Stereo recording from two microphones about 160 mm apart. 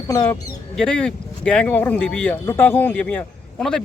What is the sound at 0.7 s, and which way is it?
Speech, 5° left (ahead or behind).